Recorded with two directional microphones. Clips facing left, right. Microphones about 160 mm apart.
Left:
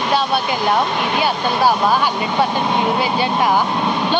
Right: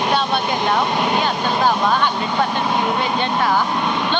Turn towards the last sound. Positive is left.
turn(degrees=15)  # may be behind; listen again after turning